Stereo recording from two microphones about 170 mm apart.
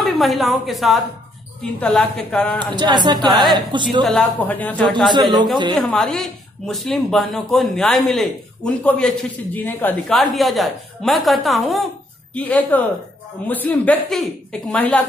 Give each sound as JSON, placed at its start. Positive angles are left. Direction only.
{"t": 0.0, "sound": "speech", "side_deg": 0}
{"t": 2.6, "sound": "speech", "side_deg": -25}
{"t": 4.0, "sound": "speech", "side_deg": 5}
{"t": 5.1, "sound": "speech", "side_deg": -25}
{"t": 5.8, "sound": "speech", "side_deg": 5}
{"t": 10.1, "sound": "speech", "side_deg": 0}